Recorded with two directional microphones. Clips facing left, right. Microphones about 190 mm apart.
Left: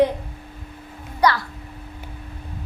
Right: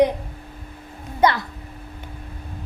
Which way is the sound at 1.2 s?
20° right (ahead or behind).